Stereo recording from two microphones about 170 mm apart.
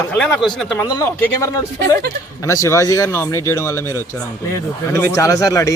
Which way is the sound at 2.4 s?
20° left (ahead or behind).